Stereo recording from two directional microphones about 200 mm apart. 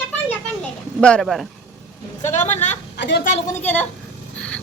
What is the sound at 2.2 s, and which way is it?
Speech, 35° left (ahead or behind).